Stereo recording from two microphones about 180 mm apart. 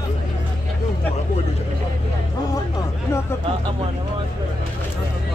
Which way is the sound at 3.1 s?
15° left (ahead or behind).